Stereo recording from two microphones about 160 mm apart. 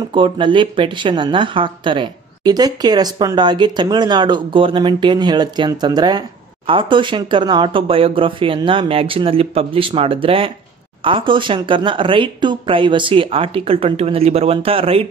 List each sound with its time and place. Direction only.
0.1 s speech: 30° right (ahead or behind)